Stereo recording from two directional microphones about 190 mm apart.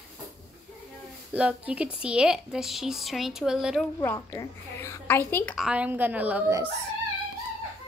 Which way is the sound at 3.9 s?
15° left (ahead or behind).